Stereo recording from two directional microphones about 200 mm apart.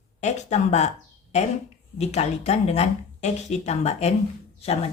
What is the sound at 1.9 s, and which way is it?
Speech, 35° left (ahead or behind).